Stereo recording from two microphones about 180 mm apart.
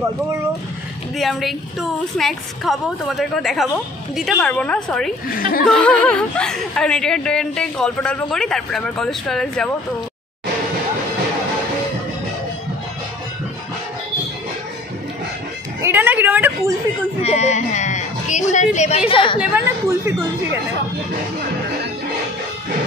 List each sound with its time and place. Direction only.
1.1 s speech: centre (ahead or behind)
5.3 s speech: 50° left (ahead or behind)
5.7 s speech: 5° left (ahead or behind)
15.8 s a sound: 10° right (ahead or behind)
17.2 s music: 40° left (ahead or behind)
19.4 s a sound: 15° right (ahead or behind)